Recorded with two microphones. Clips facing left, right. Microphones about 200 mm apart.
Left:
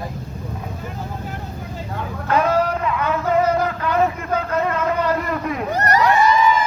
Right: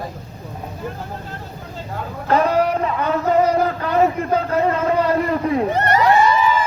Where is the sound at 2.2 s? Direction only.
35° right (ahead or behind).